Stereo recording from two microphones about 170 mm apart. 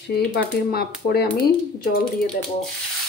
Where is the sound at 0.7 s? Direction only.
65° left (ahead or behind).